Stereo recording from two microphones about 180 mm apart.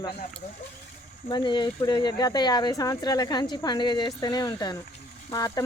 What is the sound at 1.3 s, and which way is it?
A woman's voice, 25° left (ahead or behind).